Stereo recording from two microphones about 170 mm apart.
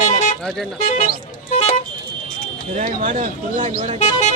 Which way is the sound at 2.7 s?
50° right (ahead or behind).